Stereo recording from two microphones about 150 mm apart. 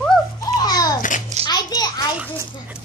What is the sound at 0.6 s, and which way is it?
Babbling, 25° left (ahead or behind).